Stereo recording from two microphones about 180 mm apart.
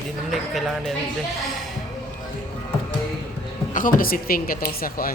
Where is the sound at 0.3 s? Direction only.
Centre (ahead or behind).